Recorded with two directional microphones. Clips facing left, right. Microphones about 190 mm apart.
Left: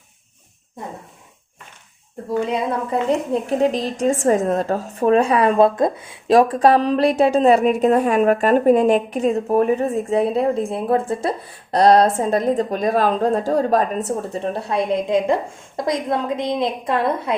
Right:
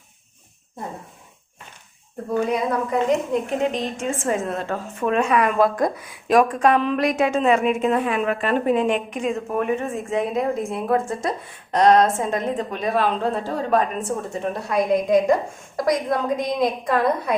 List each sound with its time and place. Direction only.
2.5 s a woman's voice: 30° left (ahead or behind)